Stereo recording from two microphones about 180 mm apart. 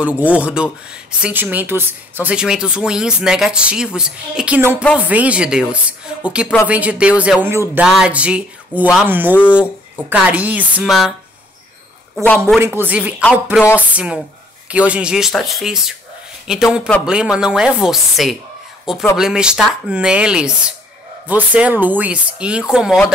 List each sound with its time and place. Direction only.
0.0 s speech: 10° right (ahead or behind)
12.2 s speech: 15° right (ahead or behind)